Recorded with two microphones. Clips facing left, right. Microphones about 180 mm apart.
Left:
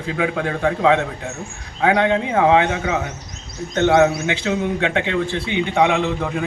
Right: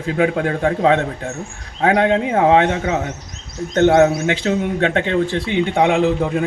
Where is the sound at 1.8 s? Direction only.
40° right (ahead or behind).